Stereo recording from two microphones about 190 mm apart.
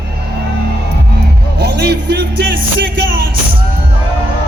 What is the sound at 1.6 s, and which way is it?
Music, 60° right (ahead or behind).